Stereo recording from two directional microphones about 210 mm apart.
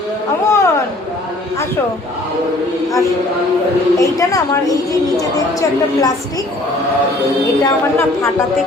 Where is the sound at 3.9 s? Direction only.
15° left (ahead or behind).